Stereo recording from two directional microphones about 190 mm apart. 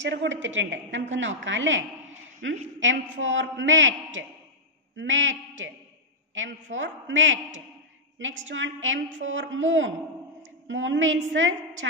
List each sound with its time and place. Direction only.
0.0 s a woman's voice: 70° right (ahead or behind)
6.3 s a woman's voice: 85° right